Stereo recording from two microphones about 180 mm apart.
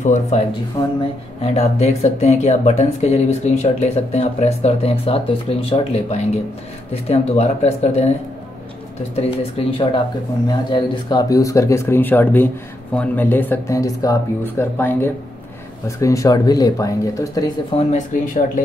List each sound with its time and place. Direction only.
0.0 s speech: 45° left (ahead or behind)
0.8 s speech: 25° left (ahead or behind)
1.4 s speech: 35° left (ahead or behind)
9.1 s speech: 30° left (ahead or behind)
17.7 s speech: 45° left (ahead or behind)